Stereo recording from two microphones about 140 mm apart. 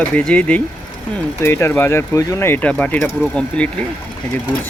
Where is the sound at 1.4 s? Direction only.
20° left (ahead or behind).